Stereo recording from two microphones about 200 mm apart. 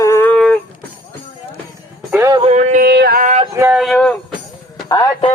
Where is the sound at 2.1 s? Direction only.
15° right (ahead or behind).